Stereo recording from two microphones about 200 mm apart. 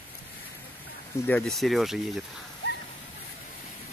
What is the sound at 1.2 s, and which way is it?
Speech, 5° left (ahead or behind).